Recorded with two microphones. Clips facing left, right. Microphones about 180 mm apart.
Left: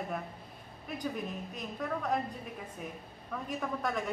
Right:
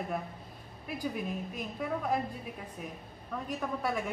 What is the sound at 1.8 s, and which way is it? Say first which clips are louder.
Speech: right 1 dB; 5° right (ahead or behind).